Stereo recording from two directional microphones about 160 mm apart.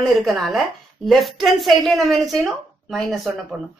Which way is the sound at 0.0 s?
Centre (ahead or behind).